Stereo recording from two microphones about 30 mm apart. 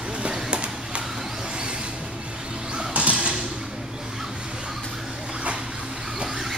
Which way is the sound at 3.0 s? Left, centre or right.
Right.